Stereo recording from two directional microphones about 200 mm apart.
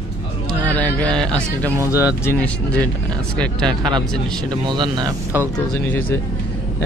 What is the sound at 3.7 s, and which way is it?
Speech, 25° right (ahead or behind).